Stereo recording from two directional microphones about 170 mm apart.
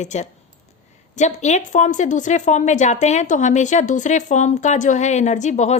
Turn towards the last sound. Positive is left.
turn(degrees=45)  # may be behind; listen again after turning